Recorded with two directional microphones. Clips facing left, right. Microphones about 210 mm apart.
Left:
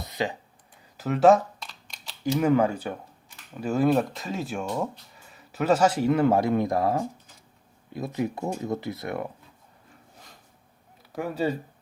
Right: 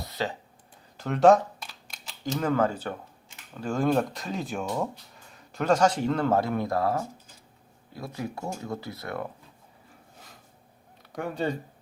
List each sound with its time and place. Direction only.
0.0 s clicking: 15° left (ahead or behind)
0.9 s speech: centre (ahead or behind)
2.2 s speech: 10° left (ahead or behind)
11.1 s speech: 5° left (ahead or behind)